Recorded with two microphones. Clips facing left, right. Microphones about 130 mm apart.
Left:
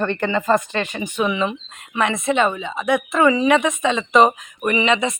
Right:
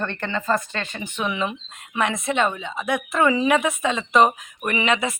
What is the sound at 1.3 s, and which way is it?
Speech, centre (ahead or behind).